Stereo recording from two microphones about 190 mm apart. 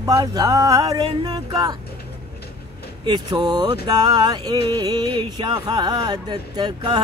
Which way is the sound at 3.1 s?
20° right (ahead or behind).